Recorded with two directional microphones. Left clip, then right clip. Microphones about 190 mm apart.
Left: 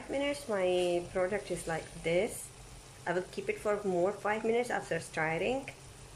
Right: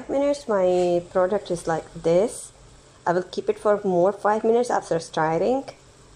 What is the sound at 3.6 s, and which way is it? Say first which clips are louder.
Speech: right 11 dB; 10° right (ahead or behind).